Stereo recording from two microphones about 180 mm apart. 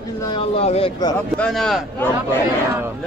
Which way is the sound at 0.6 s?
35° left (ahead or behind).